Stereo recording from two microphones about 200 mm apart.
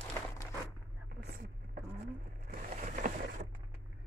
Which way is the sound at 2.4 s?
40° right (ahead or behind).